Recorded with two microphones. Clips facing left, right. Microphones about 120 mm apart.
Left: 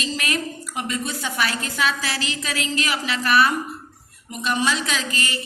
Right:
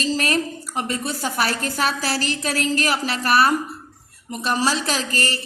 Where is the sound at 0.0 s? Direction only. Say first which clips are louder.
Right 5 dB; 35° right (ahead or behind).